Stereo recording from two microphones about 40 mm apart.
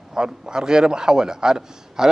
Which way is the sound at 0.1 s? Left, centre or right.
Centre.